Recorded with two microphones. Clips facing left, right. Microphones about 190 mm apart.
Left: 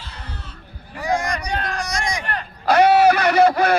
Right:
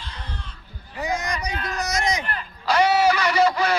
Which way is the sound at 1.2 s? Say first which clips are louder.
Left 3 dB; 50° left (ahead or behind).